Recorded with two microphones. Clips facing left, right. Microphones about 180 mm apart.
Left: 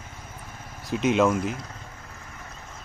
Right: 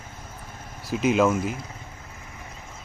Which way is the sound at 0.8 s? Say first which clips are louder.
Right 1 dB; centre (ahead or behind).